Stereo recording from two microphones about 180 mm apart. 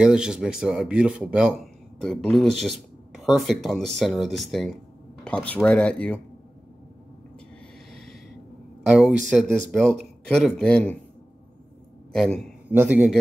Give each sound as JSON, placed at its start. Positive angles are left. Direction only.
{"t": 0.0, "sound": "speech", "side_deg": -5}
{"t": 7.9, "sound": "a sound", "side_deg": 0}
{"t": 8.8, "sound": "speech", "side_deg": -5}
{"t": 12.1, "sound": "a man's voice", "side_deg": 5}
{"t": 12.6, "sound": "a man's voice", "side_deg": -10}